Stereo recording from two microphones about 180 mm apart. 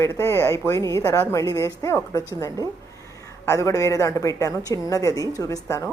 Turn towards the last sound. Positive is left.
turn(degrees=15)  # may be behind; listen again after turning